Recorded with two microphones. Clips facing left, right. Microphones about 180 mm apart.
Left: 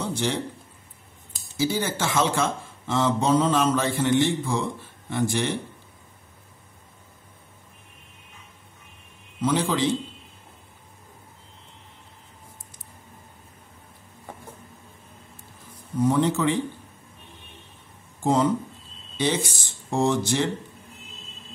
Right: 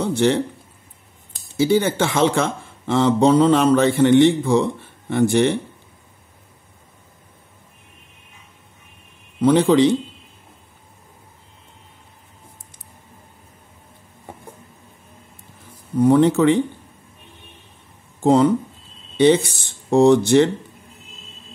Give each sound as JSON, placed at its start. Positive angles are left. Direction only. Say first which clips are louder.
{"t": 0.2, "sound": "speech", "louder": "right 10 dB", "side_deg": -65}
{"t": 1.6, "sound": "speech", "louder": "right 8 dB", "side_deg": -60}
{"t": 9.4, "sound": "speech", "louder": "right 10 dB", "side_deg": -60}
{"t": 16.0, "sound": "speech", "louder": "right 8 dB", "side_deg": -60}
{"t": 18.2, "sound": "speech", "louder": "right 7 dB", "side_deg": -65}